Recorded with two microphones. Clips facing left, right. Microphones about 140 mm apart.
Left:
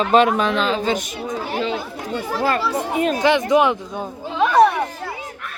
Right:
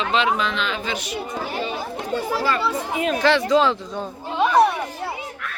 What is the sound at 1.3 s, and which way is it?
Speech, 90° left.